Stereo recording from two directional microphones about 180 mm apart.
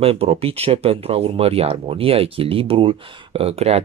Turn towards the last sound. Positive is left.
turn(degrees=-35)  # may be behind; listen again after turning